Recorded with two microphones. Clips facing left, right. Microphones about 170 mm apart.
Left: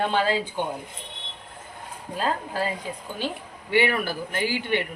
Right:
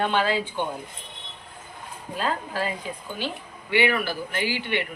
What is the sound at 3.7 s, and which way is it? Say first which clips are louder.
Speech: even; 40° left (ahead or behind).